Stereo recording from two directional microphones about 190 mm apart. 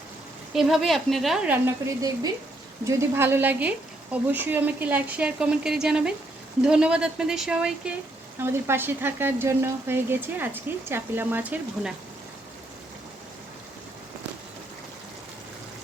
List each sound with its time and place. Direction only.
0.5 s speech: centre (ahead or behind)
2.0 s speech: 20° right (ahead or behind)
2.8 s frying: 15° right (ahead or behind)
6.6 s speech: 5° right (ahead or behind)
8.4 s frying: 10° right (ahead or behind)